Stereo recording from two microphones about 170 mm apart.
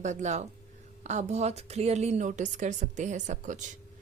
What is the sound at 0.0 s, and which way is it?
Speech, 45° right (ahead or behind).